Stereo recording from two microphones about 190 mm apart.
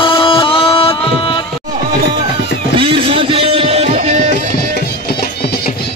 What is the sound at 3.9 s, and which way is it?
Music, 40° right (ahead or behind).